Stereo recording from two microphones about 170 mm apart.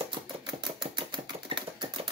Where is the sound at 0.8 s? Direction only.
25° right (ahead or behind).